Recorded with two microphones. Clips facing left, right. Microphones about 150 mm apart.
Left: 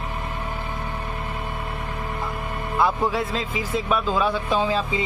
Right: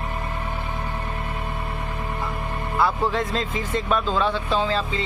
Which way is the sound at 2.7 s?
15° left (ahead or behind).